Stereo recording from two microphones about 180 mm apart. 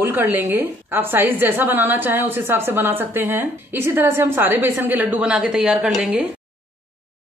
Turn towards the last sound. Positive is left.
turn(degrees=-5)  # may be behind; listen again after turning